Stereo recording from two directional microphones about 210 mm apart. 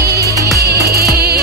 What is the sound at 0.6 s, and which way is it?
Music, 50° right (ahead or behind).